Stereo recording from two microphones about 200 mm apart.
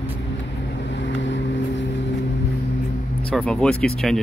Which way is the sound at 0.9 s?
65° left (ahead or behind).